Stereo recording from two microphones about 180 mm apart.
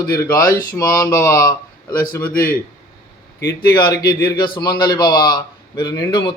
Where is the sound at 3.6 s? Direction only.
25° left (ahead or behind).